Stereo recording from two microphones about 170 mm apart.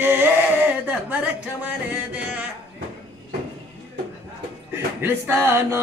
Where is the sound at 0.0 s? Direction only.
10° right (ahead or behind).